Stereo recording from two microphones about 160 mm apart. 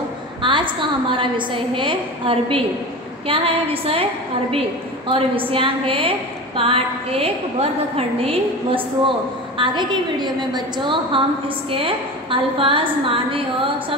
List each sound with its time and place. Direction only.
0.4 s a woman's voice: 30° right (ahead or behind)